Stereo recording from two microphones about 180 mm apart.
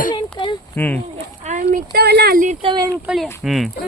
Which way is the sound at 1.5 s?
45° right (ahead or behind).